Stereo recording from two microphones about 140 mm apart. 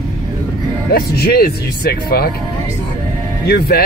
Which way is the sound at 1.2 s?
90° left.